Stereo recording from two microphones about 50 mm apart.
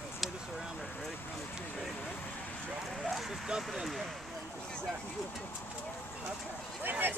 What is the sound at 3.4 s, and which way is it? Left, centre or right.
Speech, centre.